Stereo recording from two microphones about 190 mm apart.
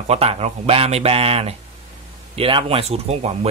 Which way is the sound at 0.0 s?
35° right (ahead or behind).